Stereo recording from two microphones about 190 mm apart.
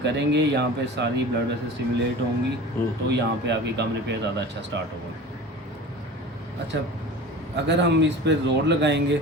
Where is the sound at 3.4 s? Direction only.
65° right (ahead or behind).